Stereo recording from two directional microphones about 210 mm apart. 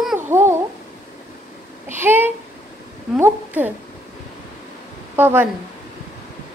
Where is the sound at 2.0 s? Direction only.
10° right (ahead or behind).